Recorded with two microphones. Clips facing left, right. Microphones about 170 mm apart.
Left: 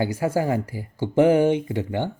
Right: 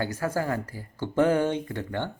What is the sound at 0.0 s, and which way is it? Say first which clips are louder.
Speech: left 5 dB; 15° left (ahead or behind).